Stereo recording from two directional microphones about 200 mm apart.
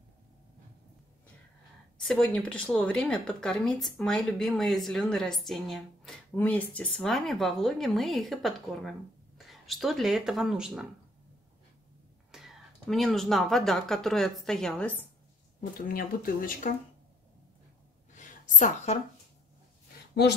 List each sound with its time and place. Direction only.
2.0 s speech: 5° left (ahead or behind)
12.3 s speech: 5° right (ahead or behind)
15.9 s speech: 45° left (ahead or behind)
18.1 s a sound: 40° left (ahead or behind)